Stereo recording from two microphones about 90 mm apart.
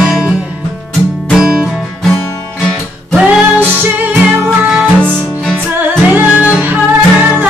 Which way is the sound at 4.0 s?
20° right (ahead or behind).